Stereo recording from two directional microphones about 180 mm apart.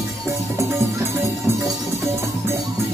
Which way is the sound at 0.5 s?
15° right (ahead or behind).